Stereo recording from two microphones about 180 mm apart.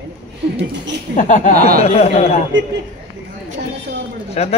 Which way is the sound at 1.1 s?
45° left (ahead or behind).